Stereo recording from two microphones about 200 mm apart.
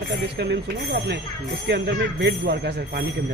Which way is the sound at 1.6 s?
55° right (ahead or behind).